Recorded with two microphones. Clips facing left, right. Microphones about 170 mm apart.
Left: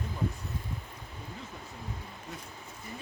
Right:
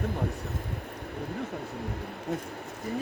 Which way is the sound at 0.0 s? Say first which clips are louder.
Right 4 dB; 65° right (ahead or behind).